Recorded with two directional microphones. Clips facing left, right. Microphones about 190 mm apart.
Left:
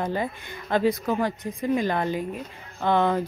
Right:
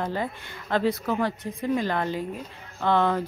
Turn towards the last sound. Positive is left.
turn(degrees=15)  # may be behind; listen again after turning